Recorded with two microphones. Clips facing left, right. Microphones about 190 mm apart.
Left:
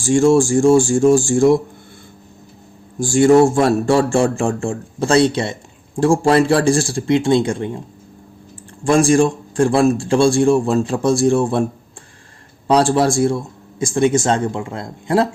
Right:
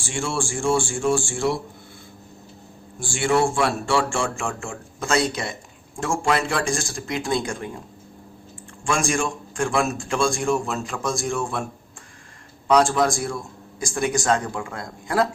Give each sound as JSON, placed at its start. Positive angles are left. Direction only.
{"t": 0.0, "sound": "a man's voice", "side_deg": 40}
{"t": 3.0, "sound": "a man's voice", "side_deg": 40}
{"t": 8.8, "sound": "a man's voice", "side_deg": 35}
{"t": 12.6, "sound": "a man's voice", "side_deg": 35}